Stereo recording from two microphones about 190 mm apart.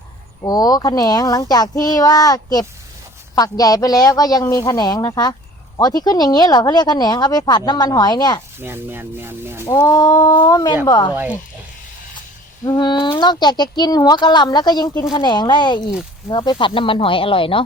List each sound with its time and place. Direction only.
0.4 s speech: 20° left (ahead or behind)
8.5 s speech: 10° right (ahead or behind)
9.6 s speech: 20° left (ahead or behind)
12.6 s speech: 20° left (ahead or behind)